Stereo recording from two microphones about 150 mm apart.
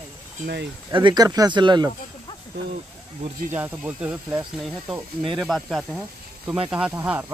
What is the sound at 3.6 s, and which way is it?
Speech, 10° right (ahead or behind).